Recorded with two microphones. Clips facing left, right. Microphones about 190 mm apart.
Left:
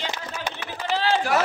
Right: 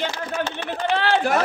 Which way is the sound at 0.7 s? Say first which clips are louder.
Right 2 dB; 60° right (ahead or behind).